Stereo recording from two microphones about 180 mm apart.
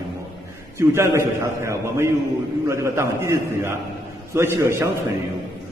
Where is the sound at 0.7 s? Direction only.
15° right (ahead or behind).